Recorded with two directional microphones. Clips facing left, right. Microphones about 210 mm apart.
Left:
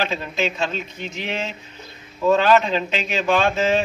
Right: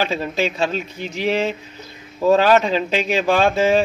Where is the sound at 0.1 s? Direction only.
35° right (ahead or behind).